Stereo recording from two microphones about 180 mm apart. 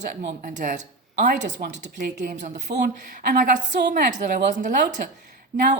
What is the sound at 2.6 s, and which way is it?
Speech, 65° right (ahead or behind).